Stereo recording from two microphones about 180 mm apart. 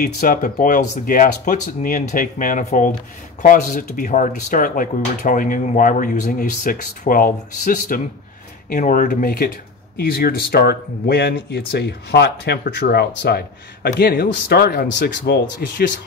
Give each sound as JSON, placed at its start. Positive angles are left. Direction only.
{"t": 0.0, "sound": "speech", "side_deg": 50}